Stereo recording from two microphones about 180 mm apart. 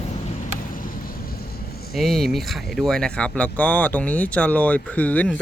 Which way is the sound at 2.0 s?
Centre (ahead or behind).